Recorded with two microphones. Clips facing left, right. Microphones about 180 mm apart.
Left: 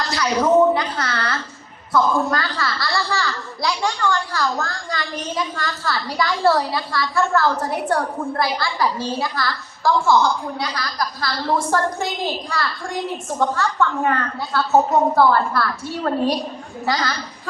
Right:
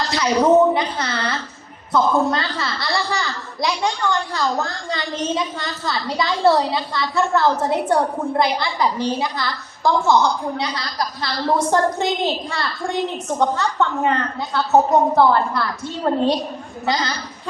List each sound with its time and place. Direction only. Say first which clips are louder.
0.7 s a woman's voice: even; 20° right (ahead or behind)